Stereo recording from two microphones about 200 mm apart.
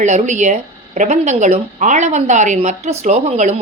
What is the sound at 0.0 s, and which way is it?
A woman's voice, 35° right (ahead or behind).